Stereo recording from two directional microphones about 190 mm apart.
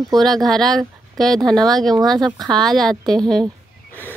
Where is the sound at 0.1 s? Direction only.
Centre (ahead or behind).